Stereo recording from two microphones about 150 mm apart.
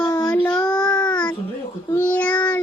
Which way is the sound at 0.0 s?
25° left (ahead or behind).